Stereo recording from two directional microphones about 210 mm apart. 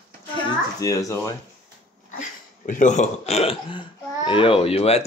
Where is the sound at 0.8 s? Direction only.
15° left (ahead or behind).